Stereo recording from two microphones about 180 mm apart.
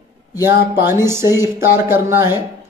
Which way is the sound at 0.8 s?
15° right (ahead or behind).